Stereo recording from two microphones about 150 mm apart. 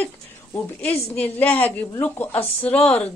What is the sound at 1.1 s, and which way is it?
A woman's voice, 10° left (ahead or behind).